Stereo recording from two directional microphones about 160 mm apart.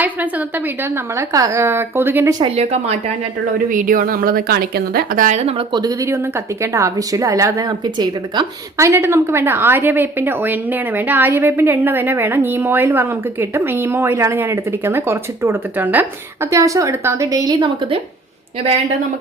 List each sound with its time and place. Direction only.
1.3 s a woman's voice: 20° right (ahead or behind)
2.4 s speech: 40° right (ahead or behind)
3.7 s a woman's voice: 60° right (ahead or behind)
5.4 s speech: 35° right (ahead or behind)
6.6 s a woman's voice: 20° right (ahead or behind)